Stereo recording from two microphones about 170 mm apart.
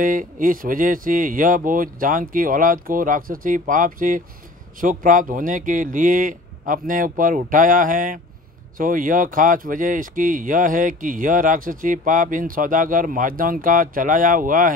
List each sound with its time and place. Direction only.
0.0 s speech: 50° right (ahead or behind)